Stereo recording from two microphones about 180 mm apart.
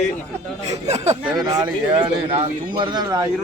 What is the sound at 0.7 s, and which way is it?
Speech, 35° right (ahead or behind).